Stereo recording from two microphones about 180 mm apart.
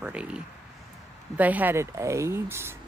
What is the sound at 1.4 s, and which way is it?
Speech, 10° right (ahead or behind).